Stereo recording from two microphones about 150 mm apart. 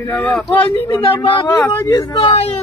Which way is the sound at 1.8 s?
20° left (ahead or behind).